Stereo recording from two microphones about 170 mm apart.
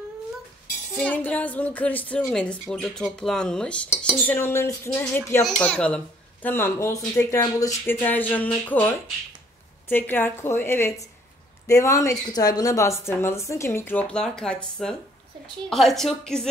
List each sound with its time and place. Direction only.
0.9 s speech: 10° left (ahead or behind)
2.7 s cutlery: 5° left (ahead or behind)
4.2 s speech: 10° left (ahead or behind)
15.7 s cutlery: centre (ahead or behind)